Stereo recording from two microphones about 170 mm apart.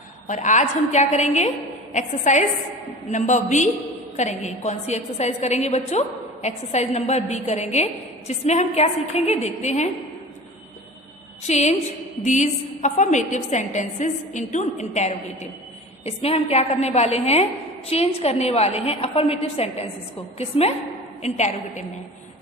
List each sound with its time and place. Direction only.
0.3 s a woman's voice: 45° left (ahead or behind)
11.4 s a woman's voice: 40° left (ahead or behind)